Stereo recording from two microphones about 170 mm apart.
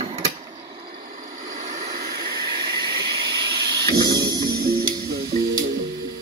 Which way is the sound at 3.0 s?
30° right (ahead or behind).